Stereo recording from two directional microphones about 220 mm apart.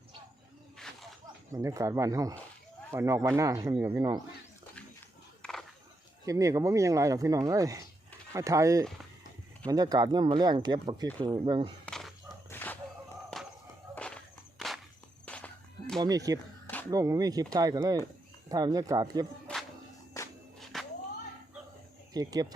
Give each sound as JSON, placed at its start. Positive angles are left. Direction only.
{"t": 1.5, "sound": "speech", "side_deg": -15}
{"t": 5.4, "sound": "a sound", "side_deg": 0}
{"t": 6.2, "sound": "speech", "side_deg": -15}
{"t": 11.9, "sound": "dog", "side_deg": 0}
{"t": 13.9, "sound": "a sound", "side_deg": 5}
{"t": 15.3, "sound": "music", "side_deg": 5}
{"t": 16.0, "sound": "speech", "side_deg": -15}
{"t": 20.7, "sound": "music", "side_deg": 0}
{"t": 22.1, "sound": "speech", "side_deg": -15}